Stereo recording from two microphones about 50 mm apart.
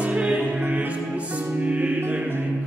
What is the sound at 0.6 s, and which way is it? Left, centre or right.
Music, right.